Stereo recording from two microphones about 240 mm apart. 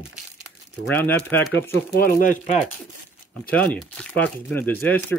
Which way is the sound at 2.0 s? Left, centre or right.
Left.